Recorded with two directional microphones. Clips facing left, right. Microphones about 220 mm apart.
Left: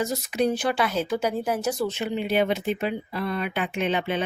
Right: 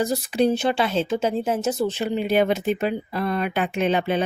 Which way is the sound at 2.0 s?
40° right (ahead or behind).